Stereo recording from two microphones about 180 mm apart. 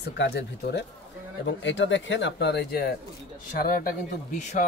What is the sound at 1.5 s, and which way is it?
Speech, 90° left.